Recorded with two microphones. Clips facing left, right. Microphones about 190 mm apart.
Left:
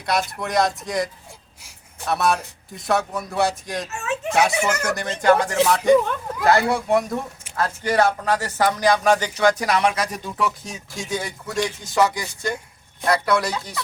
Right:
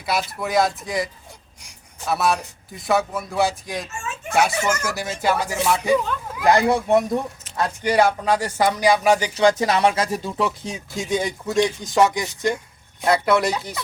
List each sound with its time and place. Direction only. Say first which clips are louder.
0.0 s speech: left 1 dB; 5° right (ahead or behind)
4.0 s a sound: left 7 dB; 65° left (ahead or behind)
4.3 s speech: even; centre (ahead or behind); by 13.8 s 20° right (ahead or behind)